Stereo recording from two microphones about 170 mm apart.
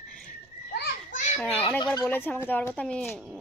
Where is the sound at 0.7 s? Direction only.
65° left (ahead or behind).